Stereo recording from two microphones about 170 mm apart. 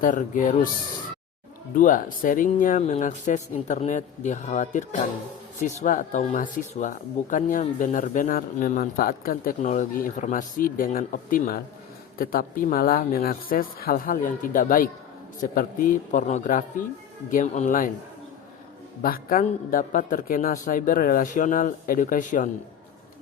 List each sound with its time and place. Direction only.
0.0 s speech: 50° left (ahead or behind)
1.7 s speech: 55° left (ahead or behind)
19.0 s speech: 60° left (ahead or behind)